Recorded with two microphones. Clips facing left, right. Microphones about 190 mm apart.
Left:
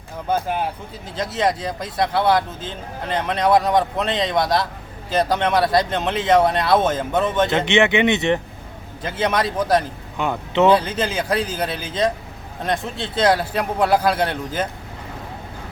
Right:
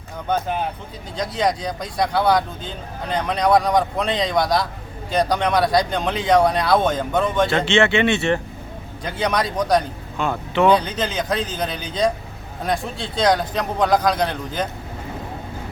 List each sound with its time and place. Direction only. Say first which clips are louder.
0.3 s speech: left 1 dB; 5° left (ahead or behind)
7.5 s speech: left 1 dB; 20° left (ahead or behind)
9.0 s speech: left 1 dB; centre (ahead or behind)
10.2 s speech: left 1 dB; 20° left (ahead or behind)
10.7 s speech: left 1 dB; 5° left (ahead or behind)